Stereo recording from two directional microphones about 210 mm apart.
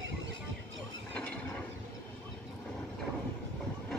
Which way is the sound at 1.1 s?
5° left (ahead or behind).